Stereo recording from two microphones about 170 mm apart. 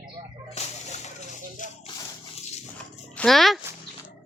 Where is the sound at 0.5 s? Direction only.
40° left (ahead or behind).